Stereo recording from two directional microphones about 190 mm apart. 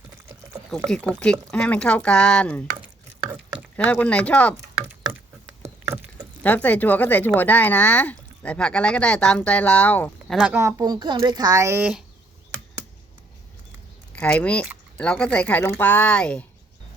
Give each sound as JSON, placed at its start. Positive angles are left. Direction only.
{"t": 0.9, "sound": "speech", "side_deg": 5}
{"t": 4.0, "sound": "speech", "side_deg": 5}
{"t": 4.5, "sound": "a sound", "side_deg": -15}
{"t": 6.4, "sound": "speech", "side_deg": 10}
{"t": 10.5, "sound": "speech", "side_deg": -15}
{"t": 14.2, "sound": "speech", "side_deg": 5}